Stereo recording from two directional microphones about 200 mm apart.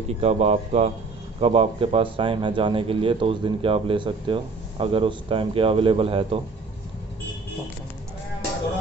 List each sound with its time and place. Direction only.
0.2 s a man's voice: 30° right (ahead or behind)